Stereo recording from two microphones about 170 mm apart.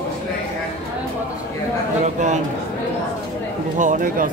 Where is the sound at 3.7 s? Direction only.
50° right (ahead or behind).